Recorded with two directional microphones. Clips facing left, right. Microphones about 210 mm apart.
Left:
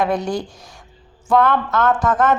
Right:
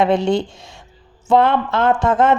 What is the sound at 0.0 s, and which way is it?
A woman's voice, 25° right (ahead or behind).